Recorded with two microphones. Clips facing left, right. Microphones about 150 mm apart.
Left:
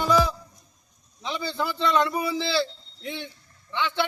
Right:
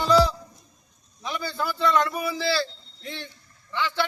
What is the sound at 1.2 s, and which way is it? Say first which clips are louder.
A man's voice: left 1 dB; 25° left (ahead or behind).